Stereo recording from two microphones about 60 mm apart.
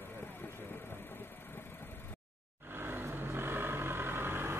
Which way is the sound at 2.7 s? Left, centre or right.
Right.